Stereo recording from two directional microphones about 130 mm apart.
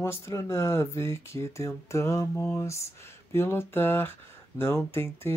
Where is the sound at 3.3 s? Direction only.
20° left (ahead or behind).